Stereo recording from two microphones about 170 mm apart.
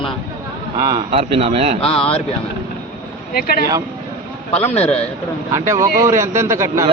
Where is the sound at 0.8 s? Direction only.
20° right (ahead or behind).